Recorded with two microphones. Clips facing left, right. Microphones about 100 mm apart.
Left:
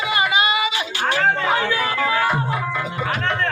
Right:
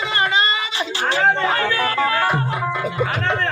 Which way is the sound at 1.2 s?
Centre (ahead or behind).